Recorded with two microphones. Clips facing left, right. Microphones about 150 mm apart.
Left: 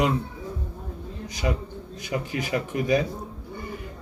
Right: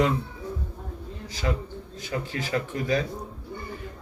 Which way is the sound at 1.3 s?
15° left (ahead or behind).